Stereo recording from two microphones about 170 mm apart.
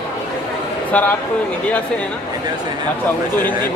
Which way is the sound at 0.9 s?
10° left (ahead or behind).